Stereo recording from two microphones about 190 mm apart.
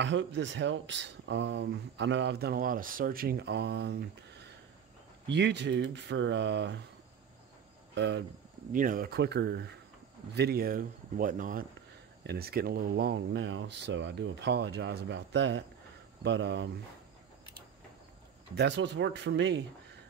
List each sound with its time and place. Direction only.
0.0 s speech: 70° right (ahead or behind)
5.3 s speech: 65° right (ahead or behind)
7.9 s speech: 70° right (ahead or behind)
8.7 s speech: 45° right (ahead or behind)
12.2 s speech: 55° right (ahead or behind)
18.5 s speech: 65° right (ahead or behind)